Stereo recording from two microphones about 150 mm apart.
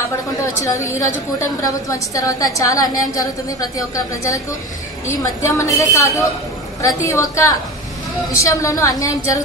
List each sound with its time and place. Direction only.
0.6 s a woman's voice: 20° left (ahead or behind)